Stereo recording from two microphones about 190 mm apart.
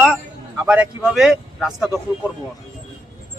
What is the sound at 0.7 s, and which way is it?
Speech, 5° right (ahead or behind).